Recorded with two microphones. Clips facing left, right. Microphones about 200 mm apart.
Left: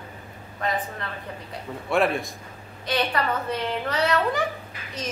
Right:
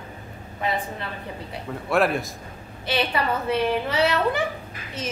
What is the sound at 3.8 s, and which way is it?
Speech, 5° right (ahead or behind).